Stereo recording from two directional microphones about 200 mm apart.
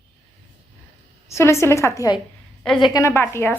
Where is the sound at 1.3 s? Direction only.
15° left (ahead or behind).